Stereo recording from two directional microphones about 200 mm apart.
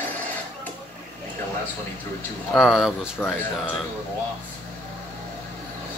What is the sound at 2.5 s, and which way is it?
Speech, centre (ahead or behind).